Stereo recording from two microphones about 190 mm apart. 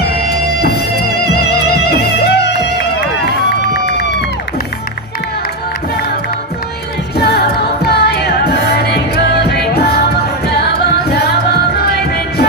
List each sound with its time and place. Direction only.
0.6 s music: 55° left (ahead or behind)
7.2 s music: 55° left (ahead or behind)